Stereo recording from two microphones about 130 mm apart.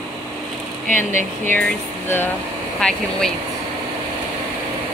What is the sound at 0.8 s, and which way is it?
Speech, 85° left.